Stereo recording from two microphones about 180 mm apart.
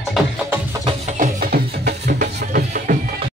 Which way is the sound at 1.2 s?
55° right (ahead or behind).